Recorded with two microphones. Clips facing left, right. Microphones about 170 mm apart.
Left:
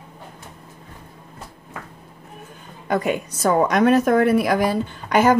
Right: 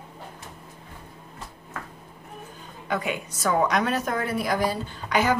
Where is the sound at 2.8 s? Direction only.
45° left (ahead or behind).